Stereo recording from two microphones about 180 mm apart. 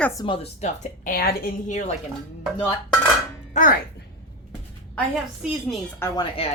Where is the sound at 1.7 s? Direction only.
40° left (ahead or behind).